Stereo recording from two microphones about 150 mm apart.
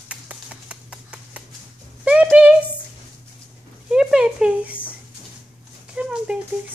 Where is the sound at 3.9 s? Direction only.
5° right (ahead or behind).